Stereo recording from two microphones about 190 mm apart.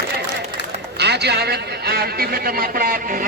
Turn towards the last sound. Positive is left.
turn(degrees=-50)  # may be behind; listen again after turning